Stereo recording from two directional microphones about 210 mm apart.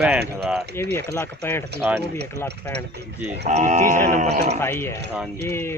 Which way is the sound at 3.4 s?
30° right (ahead or behind).